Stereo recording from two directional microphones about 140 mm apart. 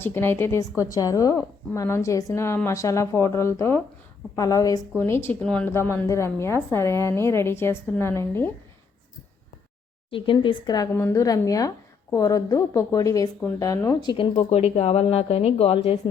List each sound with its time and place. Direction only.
0.0 s a woman's voice: 15° left (ahead or behind)
10.1 s a woman's voice: 40° left (ahead or behind)
10.9 s a woman's voice: 20° left (ahead or behind)
14.3 s speech: 45° left (ahead or behind)